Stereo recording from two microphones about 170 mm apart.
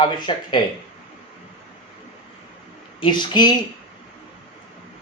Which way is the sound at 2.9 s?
25° left (ahead or behind).